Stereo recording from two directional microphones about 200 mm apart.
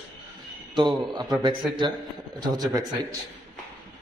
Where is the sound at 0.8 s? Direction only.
20° right (ahead or behind).